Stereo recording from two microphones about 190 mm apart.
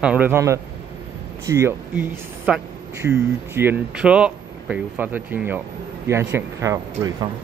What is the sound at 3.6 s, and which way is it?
Speech, 10° right (ahead or behind).